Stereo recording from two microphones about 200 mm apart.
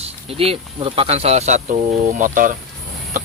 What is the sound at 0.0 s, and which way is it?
Speech, 30° right (ahead or behind).